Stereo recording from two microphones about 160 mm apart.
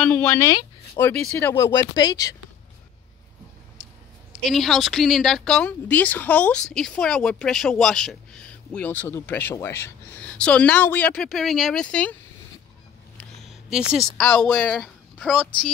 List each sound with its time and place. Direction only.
0.0 s a woman's voice: 10° left (ahead or behind); by 2.3 s 25° left (ahead or behind)
4.3 s a woman's voice: centre (ahead or behind)
13.7 s speech: 5° right (ahead or behind)